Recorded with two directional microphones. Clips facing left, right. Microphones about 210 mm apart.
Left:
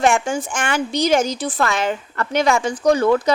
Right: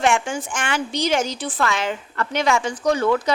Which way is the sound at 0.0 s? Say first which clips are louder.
Left 3 dB; 40° left (ahead or behind).